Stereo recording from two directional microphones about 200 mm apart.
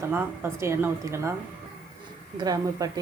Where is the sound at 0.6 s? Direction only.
15° right (ahead or behind).